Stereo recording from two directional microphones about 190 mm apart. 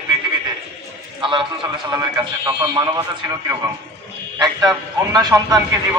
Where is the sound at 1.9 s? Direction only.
15° right (ahead or behind).